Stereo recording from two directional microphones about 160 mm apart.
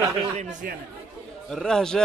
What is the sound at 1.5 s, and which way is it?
Speech, 5° left (ahead or behind).